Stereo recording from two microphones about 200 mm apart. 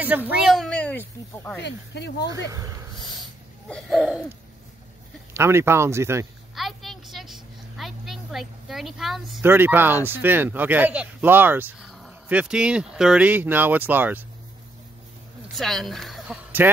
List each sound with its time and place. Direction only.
0.0 s speech: 10° right (ahead or behind); by 1.6 s 10° left (ahead or behind)
1.6 s speech: 55° left (ahead or behind)
2.5 s speech: 15° right (ahead or behind)
3.1 s a sound: centre (ahead or behind)
5.3 s speech: 15° right (ahead or behind)
6.5 s vehicle: centre (ahead or behind)
9.5 s speech: 10° right (ahead or behind)
15.4 s speech: centre (ahead or behind)